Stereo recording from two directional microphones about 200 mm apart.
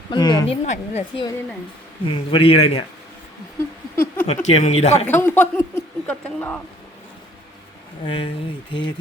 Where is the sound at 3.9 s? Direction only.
10° left (ahead or behind).